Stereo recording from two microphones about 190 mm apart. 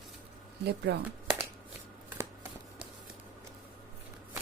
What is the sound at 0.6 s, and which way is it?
Speech, 60° right (ahead or behind).